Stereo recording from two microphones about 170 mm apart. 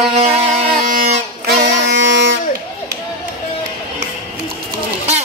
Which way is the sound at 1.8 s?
90° right.